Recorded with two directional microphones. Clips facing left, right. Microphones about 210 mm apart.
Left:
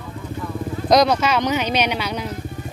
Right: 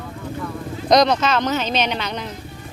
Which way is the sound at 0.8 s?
5° left (ahead or behind).